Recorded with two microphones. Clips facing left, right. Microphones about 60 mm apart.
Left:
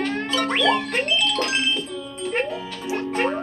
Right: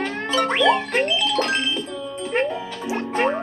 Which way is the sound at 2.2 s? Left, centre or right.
Right.